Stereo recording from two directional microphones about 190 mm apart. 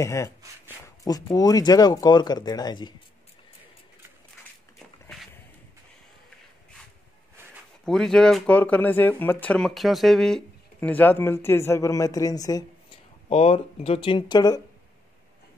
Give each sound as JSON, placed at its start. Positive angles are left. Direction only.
{"t": 0.0, "sound": "speech", "side_deg": 15}
{"t": 7.8, "sound": "speech", "side_deg": 5}
{"t": 13.3, "sound": "speech", "side_deg": 30}